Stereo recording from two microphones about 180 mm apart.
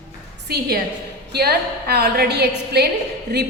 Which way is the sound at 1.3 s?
65° right (ahead or behind).